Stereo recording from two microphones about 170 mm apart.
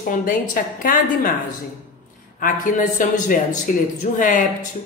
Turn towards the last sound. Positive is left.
turn(degrees=50)  # may be behind; listen again after turning